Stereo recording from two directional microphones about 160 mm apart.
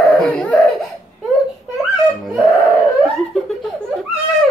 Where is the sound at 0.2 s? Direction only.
5° left (ahead or behind).